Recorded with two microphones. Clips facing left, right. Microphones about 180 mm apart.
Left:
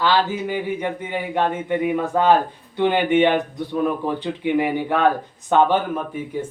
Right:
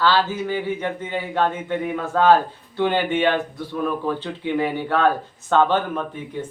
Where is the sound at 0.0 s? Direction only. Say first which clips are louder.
Even; 15° left (ahead or behind).